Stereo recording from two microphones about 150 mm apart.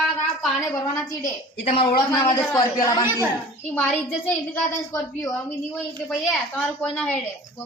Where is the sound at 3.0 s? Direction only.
15° right (ahead or behind).